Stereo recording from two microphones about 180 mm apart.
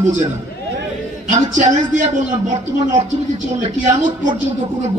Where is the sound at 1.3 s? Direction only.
45° right (ahead or behind).